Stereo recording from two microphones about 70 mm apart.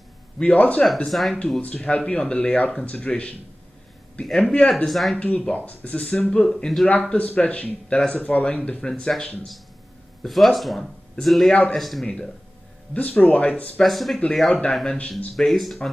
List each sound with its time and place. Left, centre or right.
0.4 s speech: centre
0.9 s speech: centre
1.6 s speech: centre
4.8 s speech: centre
5.2 s speech: centre
6.5 s speech: centre
6.9 s speech: left
12.9 s speech: centre
13.8 s speech: centre
14.5 s speech: centre
15.3 s speech: centre